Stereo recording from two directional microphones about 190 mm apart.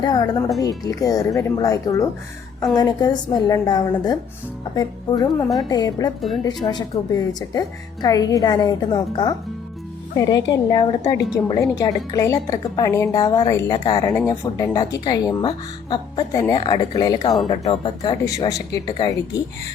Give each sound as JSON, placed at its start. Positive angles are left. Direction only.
{"t": 0.0, "sound": "speech", "side_deg": 20}
{"t": 17.5, "sound": "speech", "side_deg": 30}